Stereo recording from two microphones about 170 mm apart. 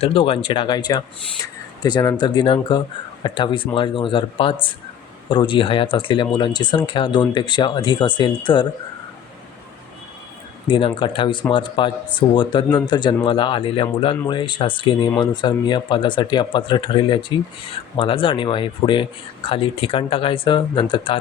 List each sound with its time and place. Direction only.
0.0 s speech: 35° left (ahead or behind)
10.7 s speech: 30° left (ahead or behind)